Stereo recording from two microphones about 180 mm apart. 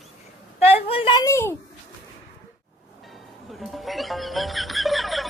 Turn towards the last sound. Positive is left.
turn(degrees=0)  # may be behind; listen again after turning